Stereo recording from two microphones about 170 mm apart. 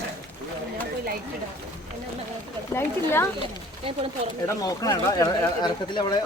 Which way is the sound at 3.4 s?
35° right (ahead or behind).